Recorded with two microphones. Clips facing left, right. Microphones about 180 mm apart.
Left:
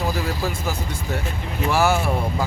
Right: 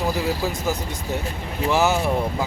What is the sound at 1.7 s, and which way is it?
Speech, 20° right (ahead or behind).